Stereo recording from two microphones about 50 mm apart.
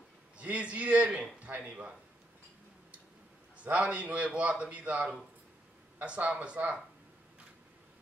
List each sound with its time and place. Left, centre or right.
0.4 s speech: right
3.5 s speech: right